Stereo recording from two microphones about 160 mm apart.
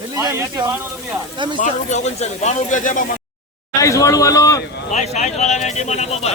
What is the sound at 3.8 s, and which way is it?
Speech, 20° left (ahead or behind).